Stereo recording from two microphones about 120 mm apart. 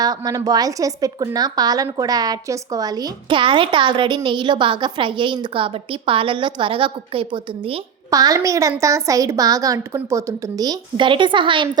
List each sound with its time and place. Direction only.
0.0 s a woman's voice: 30° right (ahead or behind)
8.1 s a woman's voice: 30° right (ahead or behind)